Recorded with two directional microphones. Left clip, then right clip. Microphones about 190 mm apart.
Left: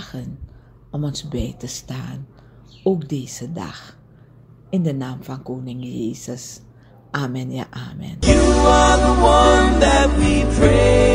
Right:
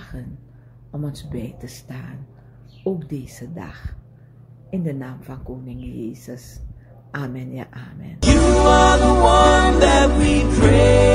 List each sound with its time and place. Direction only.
0.0 s a sound: 30° left (ahead or behind)
0.9 s a woman's voice: 25° left (ahead or behind)
8.2 s music: centre (ahead or behind)